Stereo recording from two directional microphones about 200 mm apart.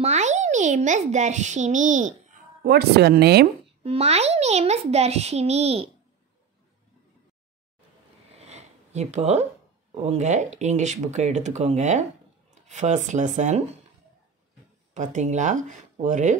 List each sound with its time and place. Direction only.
0.0 s a child's voice: 35° right (ahead or behind)
2.6 s speech: 55° right (ahead or behind)
3.8 s a child's voice: 30° right (ahead or behind)
8.4 s a sound: 35° right (ahead or behind)
9.9 s a child's voice: 35° right (ahead or behind)
15.0 s a child's voice: 35° right (ahead or behind)